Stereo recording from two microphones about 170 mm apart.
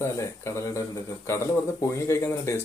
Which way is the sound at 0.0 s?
15° left (ahead or behind).